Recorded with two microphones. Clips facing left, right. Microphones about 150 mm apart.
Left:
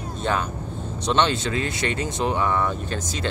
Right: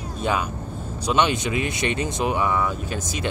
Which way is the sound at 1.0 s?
10° right (ahead or behind).